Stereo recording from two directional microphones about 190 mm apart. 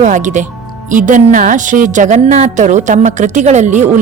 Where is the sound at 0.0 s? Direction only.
40° right (ahead or behind).